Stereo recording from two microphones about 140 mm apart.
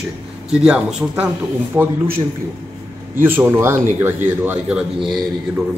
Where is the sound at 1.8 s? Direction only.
20° right (ahead or behind).